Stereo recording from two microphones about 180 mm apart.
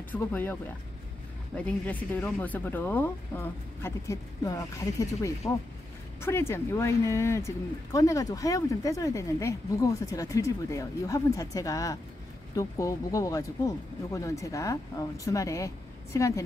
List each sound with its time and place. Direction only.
0.1 s speech: 10° left (ahead or behind)